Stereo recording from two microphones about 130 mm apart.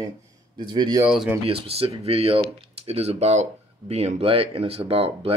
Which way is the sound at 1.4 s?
50° right (ahead or behind).